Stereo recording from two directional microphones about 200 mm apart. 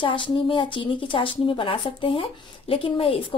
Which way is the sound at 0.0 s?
25° left (ahead or behind).